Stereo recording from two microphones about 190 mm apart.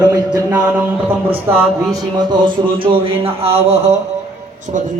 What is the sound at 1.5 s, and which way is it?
Speech, 15° right (ahead or behind).